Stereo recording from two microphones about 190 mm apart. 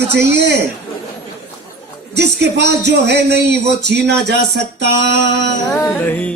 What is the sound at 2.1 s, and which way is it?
A man's voice, 65° right (ahead or behind).